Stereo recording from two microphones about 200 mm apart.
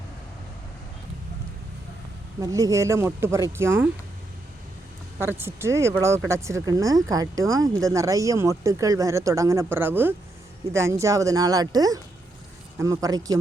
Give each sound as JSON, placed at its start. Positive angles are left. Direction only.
{"t": 2.4, "sound": "speech", "side_deg": -15}
{"t": 5.1, "sound": "speech", "side_deg": -10}